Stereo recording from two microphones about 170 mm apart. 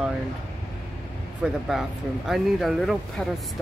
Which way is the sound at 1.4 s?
5° right (ahead or behind).